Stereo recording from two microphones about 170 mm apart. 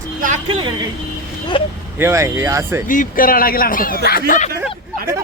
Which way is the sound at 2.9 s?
55° left (ahead or behind).